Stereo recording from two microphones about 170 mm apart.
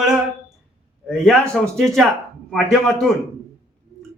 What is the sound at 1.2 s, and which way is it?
Speech, 5° left (ahead or behind).